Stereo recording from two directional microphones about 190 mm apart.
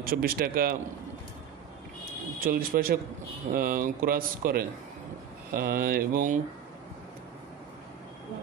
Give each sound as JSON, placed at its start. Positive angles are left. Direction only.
{"t": 0.0, "sound": "speech", "side_deg": -50}
{"t": 2.4, "sound": "speech", "side_deg": -50}